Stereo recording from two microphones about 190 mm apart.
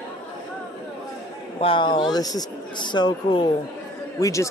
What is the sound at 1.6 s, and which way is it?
Speech, 25° left (ahead or behind).